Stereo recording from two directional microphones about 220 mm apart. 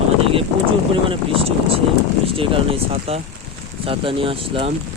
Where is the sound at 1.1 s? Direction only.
25° right (ahead or behind).